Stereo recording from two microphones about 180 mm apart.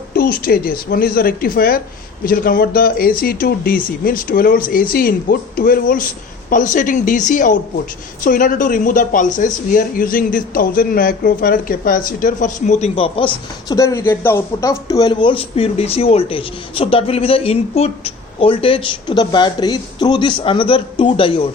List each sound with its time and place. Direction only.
0.1 s speech: 55° left (ahead or behind); by 13.7 s 30° left (ahead or behind)
13.7 s speech: 15° left (ahead or behind)